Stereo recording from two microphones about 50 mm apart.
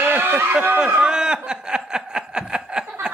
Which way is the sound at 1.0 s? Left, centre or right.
Centre.